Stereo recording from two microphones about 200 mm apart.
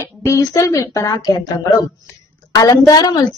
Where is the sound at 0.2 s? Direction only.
15° left (ahead or behind).